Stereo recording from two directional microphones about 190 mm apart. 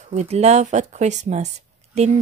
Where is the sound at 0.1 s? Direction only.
35° right (ahead or behind).